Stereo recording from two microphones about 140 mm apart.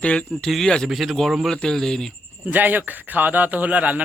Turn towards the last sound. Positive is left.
turn(degrees=-10)  # may be behind; listen again after turning